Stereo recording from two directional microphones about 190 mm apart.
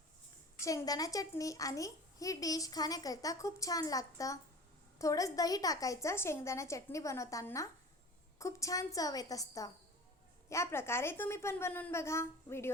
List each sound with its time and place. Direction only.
0.6 s a woman's voice: 15° left (ahead or behind)